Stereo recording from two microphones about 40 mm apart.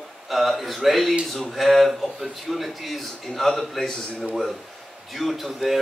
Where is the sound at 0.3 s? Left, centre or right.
Centre.